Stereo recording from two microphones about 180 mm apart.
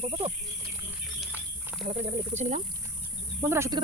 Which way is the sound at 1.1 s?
10° right (ahead or behind).